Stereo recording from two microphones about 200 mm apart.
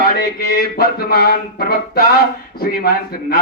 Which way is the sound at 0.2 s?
50° left (ahead or behind).